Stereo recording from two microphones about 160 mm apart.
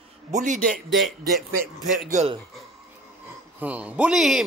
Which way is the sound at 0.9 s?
Centre (ahead or behind).